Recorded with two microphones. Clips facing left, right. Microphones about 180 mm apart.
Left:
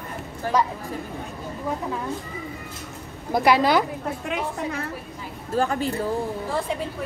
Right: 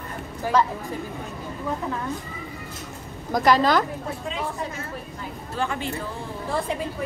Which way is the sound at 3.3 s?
10° left (ahead or behind).